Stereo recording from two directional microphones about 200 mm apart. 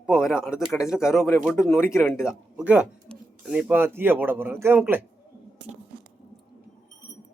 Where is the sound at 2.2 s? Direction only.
5° right (ahead or behind).